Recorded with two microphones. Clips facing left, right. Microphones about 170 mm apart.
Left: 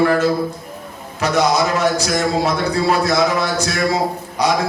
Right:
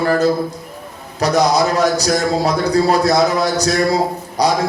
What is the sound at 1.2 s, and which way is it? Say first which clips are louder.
A man's voice: right 2 dB; 35° right (ahead or behind).